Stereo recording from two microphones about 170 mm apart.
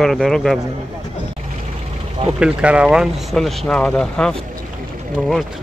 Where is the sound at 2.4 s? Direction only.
5° right (ahead or behind).